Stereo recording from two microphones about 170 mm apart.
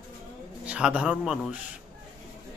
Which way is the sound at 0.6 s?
5° right (ahead or behind).